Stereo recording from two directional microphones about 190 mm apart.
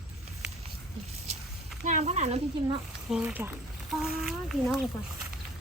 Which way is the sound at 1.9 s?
35° right (ahead or behind).